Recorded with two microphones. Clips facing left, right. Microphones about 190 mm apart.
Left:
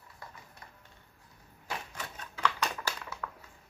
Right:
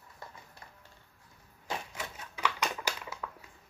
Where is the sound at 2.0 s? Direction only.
10° right (ahead or behind).